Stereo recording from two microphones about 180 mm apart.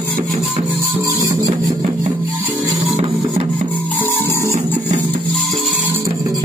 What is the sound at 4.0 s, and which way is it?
Music, 15° left (ahead or behind).